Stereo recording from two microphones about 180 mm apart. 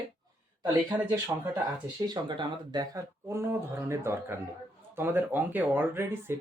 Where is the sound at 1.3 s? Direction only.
20° right (ahead or behind).